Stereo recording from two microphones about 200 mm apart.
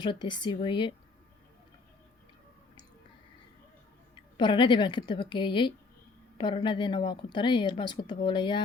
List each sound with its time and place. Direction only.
0.0 s speech: 20° left (ahead or behind)
4.1 s speech: 25° left (ahead or behind)